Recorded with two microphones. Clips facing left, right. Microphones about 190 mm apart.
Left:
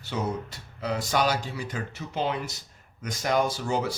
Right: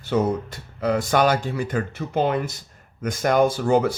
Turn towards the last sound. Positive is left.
turn(degrees=-55)  # may be behind; listen again after turning